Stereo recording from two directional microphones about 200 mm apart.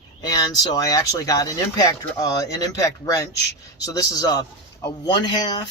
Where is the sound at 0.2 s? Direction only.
20° left (ahead or behind).